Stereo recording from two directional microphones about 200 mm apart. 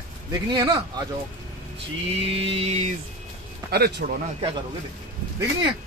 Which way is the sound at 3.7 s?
50° right (ahead or behind).